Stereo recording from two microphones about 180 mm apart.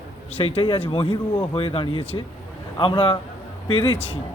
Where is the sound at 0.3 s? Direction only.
30° left (ahead or behind).